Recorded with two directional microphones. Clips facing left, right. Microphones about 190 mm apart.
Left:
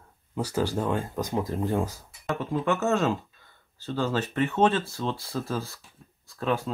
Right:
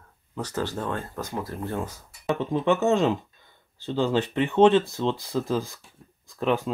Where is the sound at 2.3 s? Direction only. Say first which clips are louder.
Right 3 dB; 20° right (ahead or behind).